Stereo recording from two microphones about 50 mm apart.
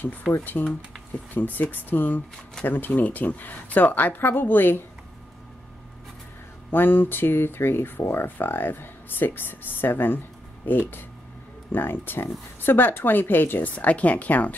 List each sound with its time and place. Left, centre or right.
0.4 s speech: left
6.7 s speech: left
13.7 s speech: left